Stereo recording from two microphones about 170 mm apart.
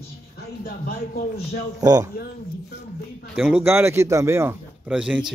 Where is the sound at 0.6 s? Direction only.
65° left (ahead or behind).